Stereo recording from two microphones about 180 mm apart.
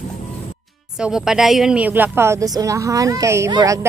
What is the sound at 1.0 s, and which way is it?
Speech, 5° right (ahead or behind).